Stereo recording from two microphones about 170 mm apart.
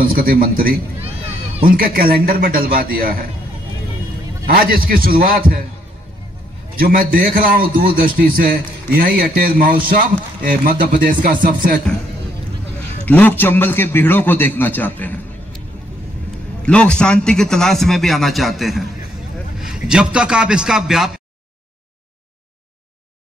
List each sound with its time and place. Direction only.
0.0 s a man's voice: 60° right (ahead or behind)
1.8 s a man's voice: 60° right (ahead or behind)
4.5 s a man's voice: 60° right (ahead or behind)
6.8 s a man's voice: 55° right (ahead or behind)
13.0 s a man's voice: 10° left (ahead or behind)
16.6 s a man's voice: 5° left (ahead or behind)